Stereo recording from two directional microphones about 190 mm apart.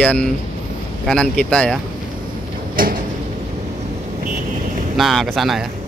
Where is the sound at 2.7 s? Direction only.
50° right (ahead or behind).